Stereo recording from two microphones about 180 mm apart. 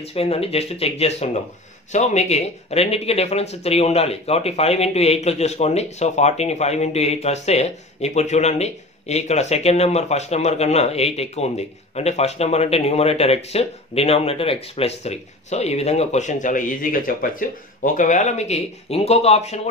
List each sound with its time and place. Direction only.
0.0 s speech: 35° left (ahead or behind)